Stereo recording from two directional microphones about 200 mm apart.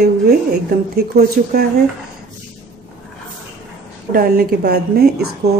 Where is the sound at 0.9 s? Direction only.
50° right (ahead or behind).